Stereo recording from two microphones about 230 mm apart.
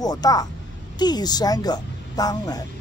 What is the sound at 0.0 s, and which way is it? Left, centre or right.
Speech, centre.